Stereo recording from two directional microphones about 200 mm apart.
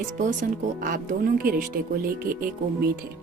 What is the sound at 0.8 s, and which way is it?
Speech, 45° right (ahead or behind).